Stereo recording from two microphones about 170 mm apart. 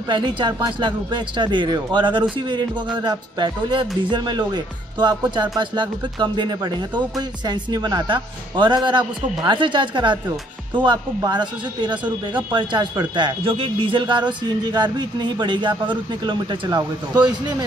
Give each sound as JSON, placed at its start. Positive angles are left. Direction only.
{"t": 0.1, "sound": "speech", "side_deg": -25}